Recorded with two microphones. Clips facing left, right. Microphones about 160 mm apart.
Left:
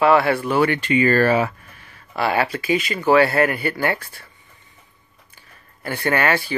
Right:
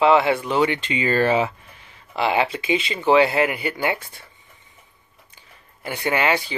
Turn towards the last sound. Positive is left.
turn(degrees=-20)  # may be behind; listen again after turning